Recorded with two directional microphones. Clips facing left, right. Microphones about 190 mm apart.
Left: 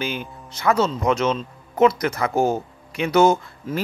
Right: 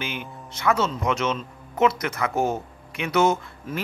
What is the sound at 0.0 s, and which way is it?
Speech, 35° left (ahead or behind).